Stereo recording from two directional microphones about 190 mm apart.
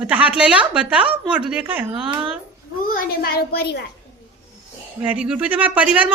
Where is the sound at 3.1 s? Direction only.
55° left (ahead or behind).